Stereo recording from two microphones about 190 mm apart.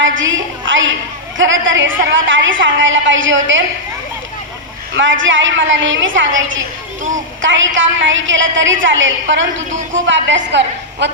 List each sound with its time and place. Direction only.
0.2 s a woman's voice: 85° right
4.9 s a woman's voice: 80° right